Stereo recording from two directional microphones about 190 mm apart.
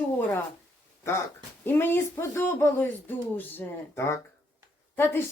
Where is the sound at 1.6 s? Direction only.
10° left (ahead or behind).